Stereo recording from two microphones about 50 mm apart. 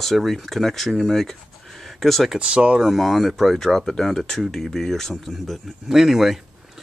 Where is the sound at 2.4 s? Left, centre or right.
Right.